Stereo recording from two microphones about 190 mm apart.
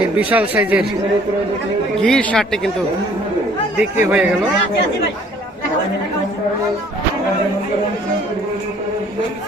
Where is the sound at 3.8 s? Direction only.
5° right (ahead or behind).